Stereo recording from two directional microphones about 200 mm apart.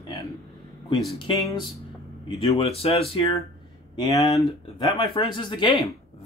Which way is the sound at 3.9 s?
20° left (ahead or behind).